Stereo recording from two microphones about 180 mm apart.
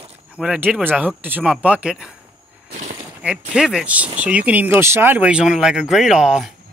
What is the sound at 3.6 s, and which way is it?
Speech, 5° right (ahead or behind).